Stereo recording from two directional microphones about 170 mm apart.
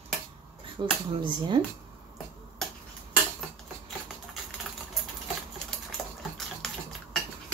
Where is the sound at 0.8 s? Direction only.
25° right (ahead or behind).